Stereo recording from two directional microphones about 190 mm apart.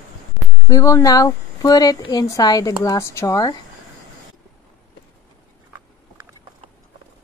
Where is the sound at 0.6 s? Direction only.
15° left (ahead or behind).